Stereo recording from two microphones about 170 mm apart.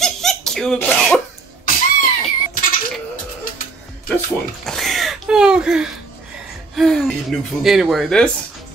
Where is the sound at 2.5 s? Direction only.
55° left (ahead or behind).